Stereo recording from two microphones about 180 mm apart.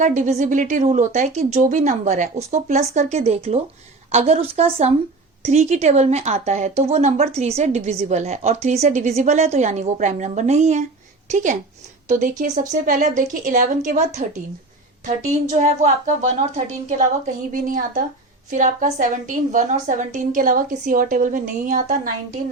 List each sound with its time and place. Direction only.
0.0 s a woman's voice: 45° right (ahead or behind)